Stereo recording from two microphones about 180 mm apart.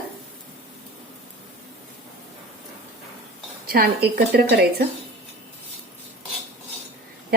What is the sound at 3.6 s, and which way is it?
A woman's voice, 55° right (ahead or behind).